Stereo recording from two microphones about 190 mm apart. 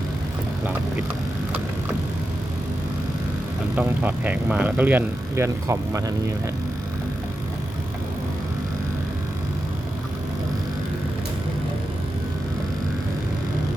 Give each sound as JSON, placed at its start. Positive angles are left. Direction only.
{"t": 3.8, "sound": "speech", "side_deg": -10}